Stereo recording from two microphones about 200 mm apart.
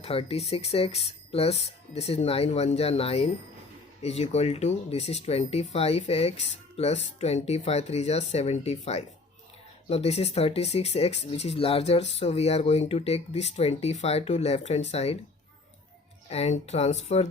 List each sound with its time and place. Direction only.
0.0 s speech: 30° left (ahead or behind)
16.3 s speech: 30° left (ahead or behind)